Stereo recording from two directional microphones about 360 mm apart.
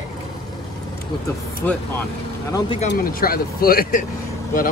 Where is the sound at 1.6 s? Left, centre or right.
Centre; by 4.0 s left.